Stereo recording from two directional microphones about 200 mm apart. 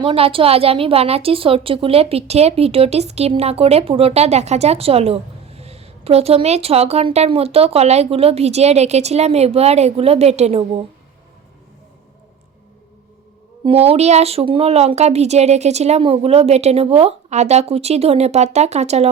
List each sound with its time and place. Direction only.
0.0 s a woman's voice: 25° right (ahead or behind)
13.7 s a woman's voice: 30° right (ahead or behind)